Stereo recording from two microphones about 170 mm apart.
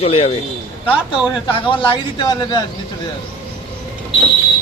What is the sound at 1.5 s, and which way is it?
A man's voice, 30° left (ahead or behind).